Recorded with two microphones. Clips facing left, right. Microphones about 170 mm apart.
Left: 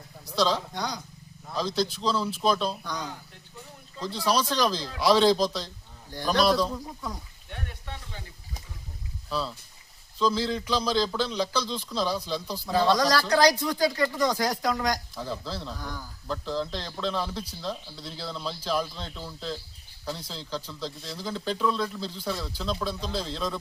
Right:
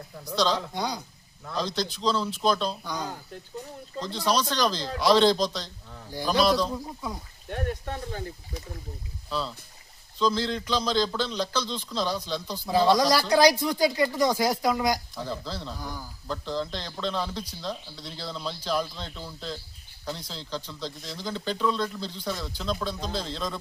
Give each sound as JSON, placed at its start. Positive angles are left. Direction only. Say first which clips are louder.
{"t": 0.3, "sound": "a man's voice", "louder": "even", "side_deg": 5}
{"t": 0.7, "sound": "speech", "louder": "right 2 dB", "side_deg": -10}
{"t": 1.5, "sound": "speech", "louder": "left 2 dB", "side_deg": 5}
{"t": 2.8, "sound": "speech", "louder": "right 2 dB", "side_deg": -5}
{"t": 4.0, "sound": "speech", "louder": "even", "side_deg": 5}
{"t": 6.1, "sound": "speech", "louder": "even", "side_deg": -10}
{"t": 7.5, "sound": "a sound", "louder": "right 9 dB", "side_deg": -45}
{"t": 10.2, "sound": "speech", "louder": "even", "side_deg": 5}
{"t": 12.6, "sound": "speech", "louder": "right 2 dB", "side_deg": -10}
{"t": 15.1, "sound": "speech", "louder": "even", "side_deg": 0}
{"t": 15.7, "sound": "speech", "louder": "right 1 dB", "side_deg": -10}
{"t": 16.2, "sound": "speech", "louder": "even", "side_deg": 0}